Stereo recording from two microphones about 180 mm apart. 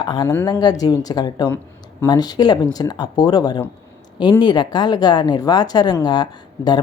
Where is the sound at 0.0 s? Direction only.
20° left (ahead or behind).